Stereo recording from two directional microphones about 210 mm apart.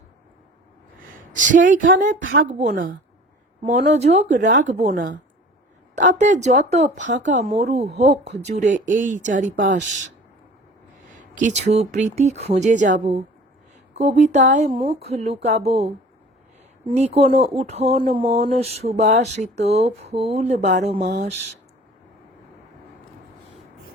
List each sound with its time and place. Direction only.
1.4 s speech: 40° right (ahead or behind)
11.3 s speech: 35° right (ahead or behind)